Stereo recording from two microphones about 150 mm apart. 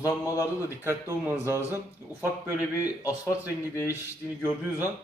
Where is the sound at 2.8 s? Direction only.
10° right (ahead or behind).